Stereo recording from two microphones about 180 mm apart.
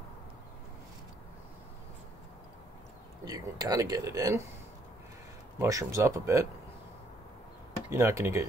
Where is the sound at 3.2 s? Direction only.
20° right (ahead or behind).